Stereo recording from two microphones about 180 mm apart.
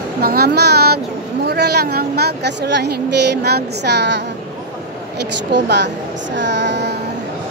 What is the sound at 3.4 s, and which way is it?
Speech, 65° right (ahead or behind).